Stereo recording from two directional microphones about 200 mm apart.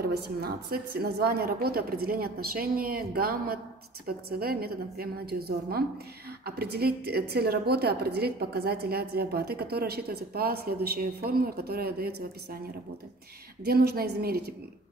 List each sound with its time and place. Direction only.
0.0 s a woman's voice: 50° right (ahead or behind)
13.7 s a woman's voice: 50° right (ahead or behind)